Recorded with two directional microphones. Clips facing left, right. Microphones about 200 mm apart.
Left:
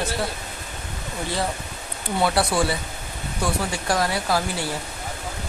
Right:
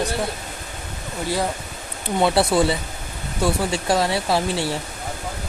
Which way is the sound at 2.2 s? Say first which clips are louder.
Right 4 dB; 25° right (ahead or behind).